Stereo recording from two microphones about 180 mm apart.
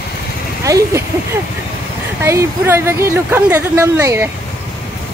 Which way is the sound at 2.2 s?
15° right (ahead or behind).